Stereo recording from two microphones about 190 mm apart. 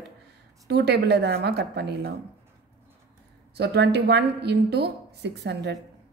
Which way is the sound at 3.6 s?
60° right (ahead or behind).